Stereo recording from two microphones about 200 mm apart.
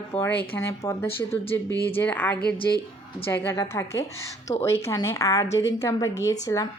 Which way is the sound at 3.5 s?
15° left (ahead or behind).